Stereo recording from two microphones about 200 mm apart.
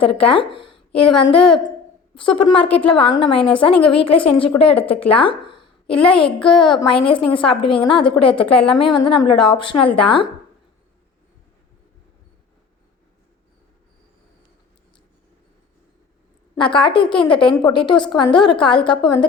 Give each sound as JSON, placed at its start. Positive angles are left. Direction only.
{"t": 0.0, "sound": "a woman's voice", "side_deg": 25}
{"t": 5.5, "sound": "a sound", "side_deg": 25}
{"t": 6.4, "sound": "a woman's voice", "side_deg": 25}
{"t": 16.7, "sound": "a woman's voice", "side_deg": 25}